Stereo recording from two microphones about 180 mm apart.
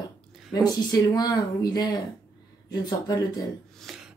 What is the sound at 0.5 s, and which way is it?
Speech, 20° left (ahead or behind).